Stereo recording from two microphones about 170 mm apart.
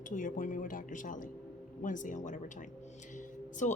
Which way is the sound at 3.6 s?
45° left (ahead or behind).